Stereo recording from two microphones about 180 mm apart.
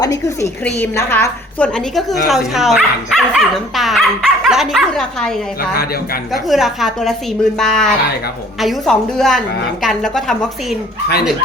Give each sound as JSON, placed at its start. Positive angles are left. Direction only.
{"t": 0.0, "sound": "a woman's voice", "side_deg": 20}
{"t": 6.5, "sound": "a woman's voice", "side_deg": 0}